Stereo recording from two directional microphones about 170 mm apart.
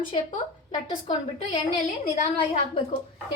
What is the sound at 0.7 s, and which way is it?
Speech, 25° left (ahead or behind).